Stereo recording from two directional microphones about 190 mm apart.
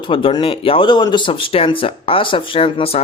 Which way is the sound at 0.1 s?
25° left (ahead or behind).